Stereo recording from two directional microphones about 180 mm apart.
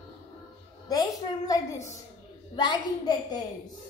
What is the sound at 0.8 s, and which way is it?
A woman's voice, 20° left (ahead or behind).